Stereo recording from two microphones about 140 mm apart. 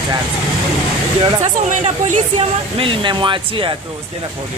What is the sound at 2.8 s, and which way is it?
Speech, 35° right (ahead or behind).